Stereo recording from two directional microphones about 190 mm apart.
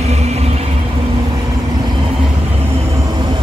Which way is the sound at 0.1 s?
35° right (ahead or behind).